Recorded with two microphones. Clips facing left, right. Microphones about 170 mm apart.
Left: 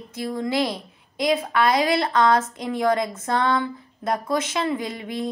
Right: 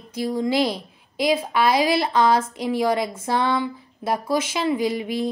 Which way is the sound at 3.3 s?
10° right (ahead or behind).